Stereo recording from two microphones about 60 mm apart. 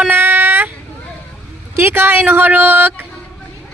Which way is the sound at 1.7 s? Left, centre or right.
Right.